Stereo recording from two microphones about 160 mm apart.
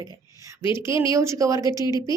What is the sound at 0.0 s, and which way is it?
A woman's voice, 20° right (ahead or behind).